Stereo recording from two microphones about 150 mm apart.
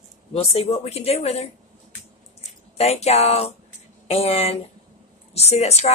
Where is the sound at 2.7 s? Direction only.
45° left (ahead or behind).